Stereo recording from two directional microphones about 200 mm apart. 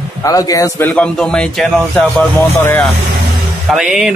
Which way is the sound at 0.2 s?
15° left (ahead or behind).